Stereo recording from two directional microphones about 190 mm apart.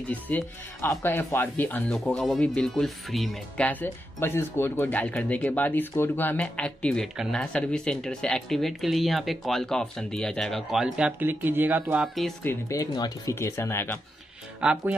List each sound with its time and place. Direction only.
0.1 s speech: 10° left (ahead or behind)
12.4 s speech: 15° left (ahead or behind)
14.6 s speech: 5° right (ahead or behind)